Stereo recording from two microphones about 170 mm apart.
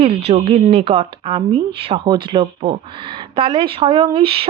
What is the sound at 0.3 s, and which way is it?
Speech, 40° right (ahead or behind).